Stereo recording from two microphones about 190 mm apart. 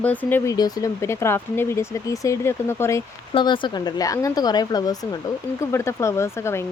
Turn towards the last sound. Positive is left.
turn(degrees=15)  # may be behind; listen again after turning